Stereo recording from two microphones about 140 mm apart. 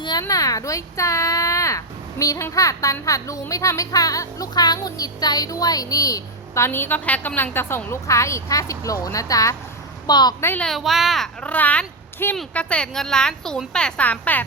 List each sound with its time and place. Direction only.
0.0 s a child's voice: 30° left (ahead or behind)
10.4 s speech: 15° left (ahead or behind)
10.7 s speech: centre (ahead or behind)